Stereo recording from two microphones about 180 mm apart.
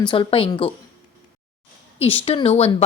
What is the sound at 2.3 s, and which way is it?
Speech, 35° left (ahead or behind).